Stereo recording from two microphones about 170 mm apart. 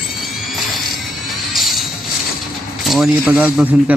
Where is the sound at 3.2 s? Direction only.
10° right (ahead or behind).